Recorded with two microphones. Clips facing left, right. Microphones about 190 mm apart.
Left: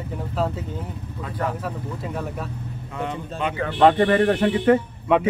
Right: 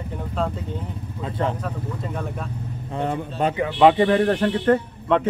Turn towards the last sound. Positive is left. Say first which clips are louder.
# left 1 dB
turn(degrees=10)  # may be behind; listen again after turning